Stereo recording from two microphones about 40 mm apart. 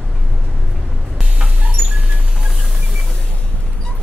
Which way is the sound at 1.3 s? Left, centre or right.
Right.